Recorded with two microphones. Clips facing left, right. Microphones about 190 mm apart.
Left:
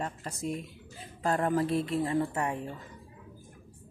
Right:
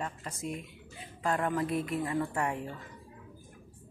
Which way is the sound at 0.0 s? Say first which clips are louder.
Left 2 dB; 35° left (ahead or behind).